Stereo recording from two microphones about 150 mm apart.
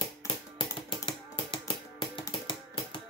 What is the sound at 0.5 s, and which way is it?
Typing, 35° left (ahead or behind).